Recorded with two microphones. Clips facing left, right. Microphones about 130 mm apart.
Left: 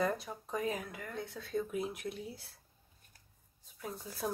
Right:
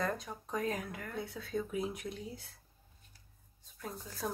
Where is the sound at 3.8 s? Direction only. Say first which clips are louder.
Left 1 dB; 10° left (ahead or behind).